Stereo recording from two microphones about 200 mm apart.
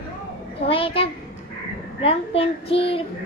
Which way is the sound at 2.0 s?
30° left (ahead or behind).